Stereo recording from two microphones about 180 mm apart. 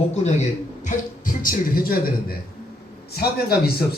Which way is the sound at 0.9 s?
50° left (ahead or behind).